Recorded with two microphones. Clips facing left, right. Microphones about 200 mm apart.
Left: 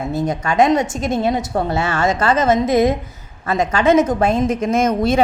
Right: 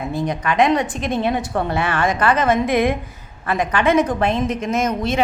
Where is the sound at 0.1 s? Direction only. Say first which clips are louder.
Left 2 dB; 45° left (ahead or behind).